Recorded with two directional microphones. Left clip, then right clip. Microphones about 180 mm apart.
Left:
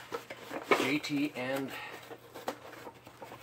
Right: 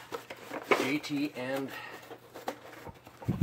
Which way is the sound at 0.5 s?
20° right (ahead or behind).